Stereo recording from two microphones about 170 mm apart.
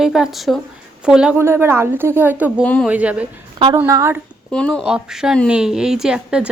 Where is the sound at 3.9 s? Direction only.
15° right (ahead or behind).